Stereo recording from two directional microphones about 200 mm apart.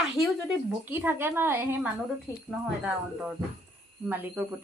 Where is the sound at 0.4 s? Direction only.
5° right (ahead or behind).